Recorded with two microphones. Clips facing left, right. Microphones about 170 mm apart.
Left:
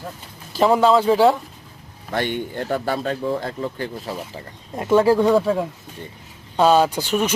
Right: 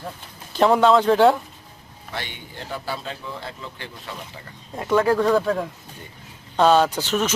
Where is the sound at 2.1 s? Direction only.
50° left (ahead or behind).